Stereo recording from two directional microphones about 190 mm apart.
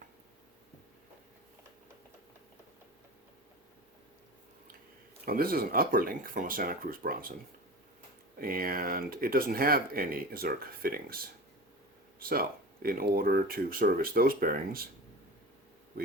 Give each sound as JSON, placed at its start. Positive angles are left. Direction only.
{"t": 5.2, "sound": "speech", "side_deg": -50}
{"t": 8.4, "sound": "speech", "side_deg": -50}